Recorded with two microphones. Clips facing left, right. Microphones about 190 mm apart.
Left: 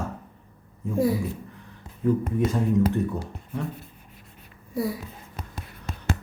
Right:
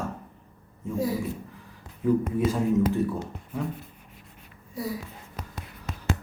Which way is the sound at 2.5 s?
5° right (ahead or behind).